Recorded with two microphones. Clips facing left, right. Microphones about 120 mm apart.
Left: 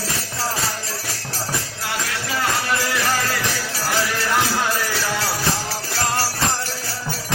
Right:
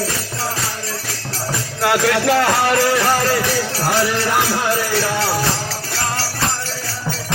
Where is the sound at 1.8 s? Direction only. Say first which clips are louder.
Right 11 dB; 70° right (ahead or behind).